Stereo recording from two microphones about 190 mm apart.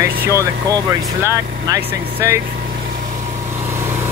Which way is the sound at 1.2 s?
15° right (ahead or behind).